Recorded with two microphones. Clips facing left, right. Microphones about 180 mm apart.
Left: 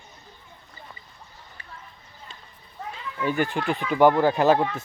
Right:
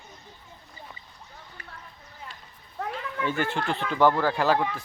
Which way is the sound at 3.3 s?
15° left (ahead or behind).